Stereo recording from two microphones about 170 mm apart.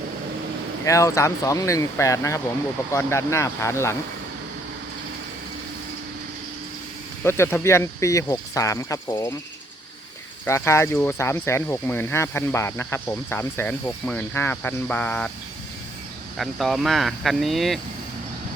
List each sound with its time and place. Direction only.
0.9 s speech: 20° left (ahead or behind)
7.3 s speech: 15° left (ahead or behind)
10.4 s speech: 15° left (ahead or behind)
16.4 s speech: centre (ahead or behind)